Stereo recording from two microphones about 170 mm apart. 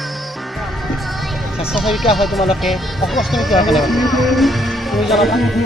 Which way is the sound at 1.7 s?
Centre (ahead or behind).